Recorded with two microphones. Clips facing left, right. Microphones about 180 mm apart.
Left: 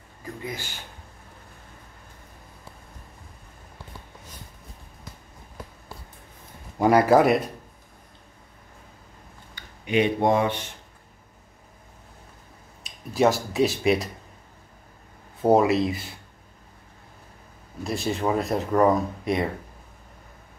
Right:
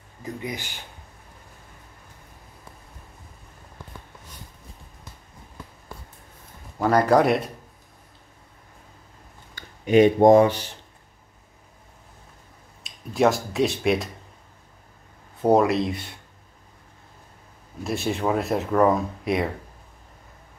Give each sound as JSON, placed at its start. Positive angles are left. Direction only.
{"t": 0.2, "sound": "speech", "side_deg": -20}
{"t": 6.8, "sound": "speech", "side_deg": 10}
{"t": 9.6, "sound": "speech", "side_deg": -45}
{"t": 12.8, "sound": "speech", "side_deg": 0}
{"t": 15.4, "sound": "speech", "side_deg": 0}
{"t": 17.8, "sound": "speech", "side_deg": 0}